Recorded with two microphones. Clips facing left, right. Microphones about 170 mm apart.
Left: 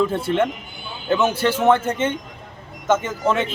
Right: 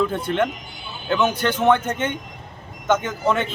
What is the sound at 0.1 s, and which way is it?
Speech, 5° left (ahead or behind).